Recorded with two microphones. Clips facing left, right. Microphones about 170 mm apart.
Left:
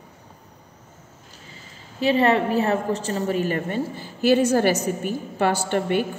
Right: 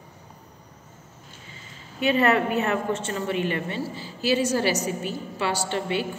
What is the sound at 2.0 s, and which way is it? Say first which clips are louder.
A woman's voice: left 2 dB; 30° left (ahead or behind).